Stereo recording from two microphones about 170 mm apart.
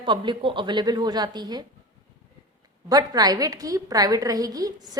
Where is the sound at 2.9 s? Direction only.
25° right (ahead or behind).